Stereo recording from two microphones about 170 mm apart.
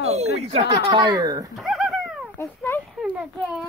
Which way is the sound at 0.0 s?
40° right (ahead or behind).